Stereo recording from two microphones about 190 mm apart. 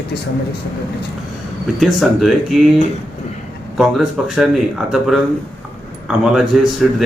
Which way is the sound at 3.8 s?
Centre (ahead or behind).